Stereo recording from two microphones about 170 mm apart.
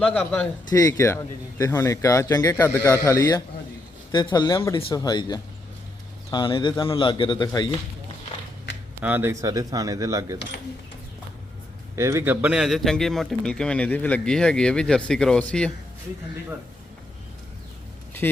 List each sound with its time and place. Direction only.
0.0 s speech: 10° left (ahead or behind)
0.7 s a man's voice: 20° left (ahead or behind)
9.0 s speech: 10° right (ahead or behind)
11.9 s speech: 15° right (ahead or behind); by 15.7 s 5° left (ahead or behind)
18.2 s speech: 10° left (ahead or behind)